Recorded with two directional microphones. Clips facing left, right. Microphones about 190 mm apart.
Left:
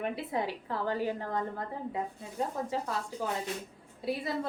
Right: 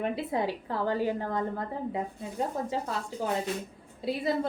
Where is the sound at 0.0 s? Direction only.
30° right (ahead or behind).